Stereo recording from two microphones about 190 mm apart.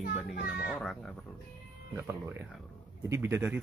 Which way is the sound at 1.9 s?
15° right (ahead or behind).